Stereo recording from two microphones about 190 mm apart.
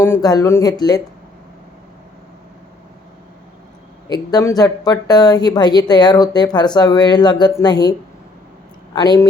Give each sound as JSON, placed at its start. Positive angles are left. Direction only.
{"t": 0.0, "sound": "a woman's voice", "side_deg": 15}
{"t": 4.1, "sound": "a woman's voice", "side_deg": 20}
{"t": 8.9, "sound": "speech", "side_deg": 20}